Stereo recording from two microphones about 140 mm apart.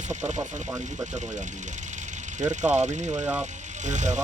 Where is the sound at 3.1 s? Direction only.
15° right (ahead or behind).